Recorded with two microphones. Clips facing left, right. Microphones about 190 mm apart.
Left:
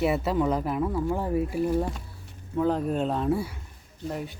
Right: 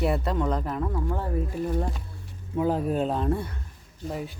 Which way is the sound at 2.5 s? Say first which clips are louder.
Even; 10° right (ahead or behind).